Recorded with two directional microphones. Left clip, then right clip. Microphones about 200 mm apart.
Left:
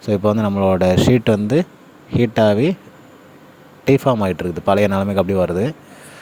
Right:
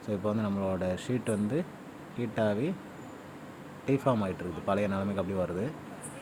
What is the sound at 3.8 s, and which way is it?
Speech, 45° left (ahead or behind).